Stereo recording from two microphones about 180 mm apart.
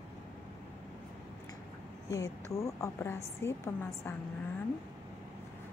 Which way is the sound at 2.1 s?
15° left (ahead or behind).